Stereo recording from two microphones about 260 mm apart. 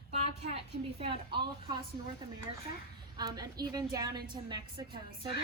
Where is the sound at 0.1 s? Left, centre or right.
Right.